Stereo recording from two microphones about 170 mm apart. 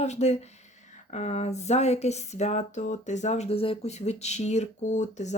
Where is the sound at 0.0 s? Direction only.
40° left (ahead or behind).